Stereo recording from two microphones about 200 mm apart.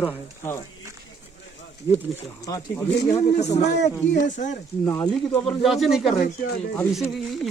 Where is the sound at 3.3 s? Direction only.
35° left (ahead or behind).